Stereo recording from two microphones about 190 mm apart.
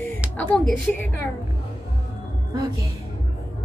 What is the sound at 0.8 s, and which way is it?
Speech, 10° left (ahead or behind).